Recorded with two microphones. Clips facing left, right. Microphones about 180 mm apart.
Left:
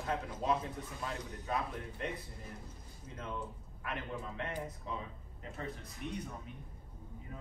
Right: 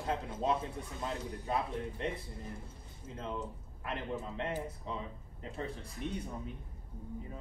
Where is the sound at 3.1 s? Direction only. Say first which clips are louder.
Right 2 dB; 30° right (ahead or behind).